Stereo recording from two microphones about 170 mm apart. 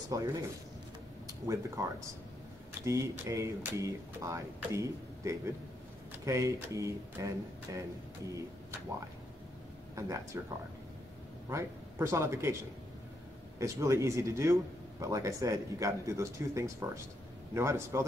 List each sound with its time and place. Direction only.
0.1 s speech: 20° right (ahead or behind)
1.8 s speech: 20° right (ahead or behind)
9.9 s speech: 20° right (ahead or behind)
11.4 s speech: 15° right (ahead or behind)
13.6 s speech: 20° right (ahead or behind)